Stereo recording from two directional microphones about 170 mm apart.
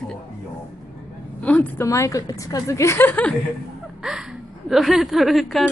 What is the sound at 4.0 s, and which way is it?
A woman's voice, 5° right (ahead or behind).